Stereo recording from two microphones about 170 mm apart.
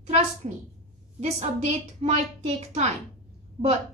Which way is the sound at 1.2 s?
40° right (ahead or behind).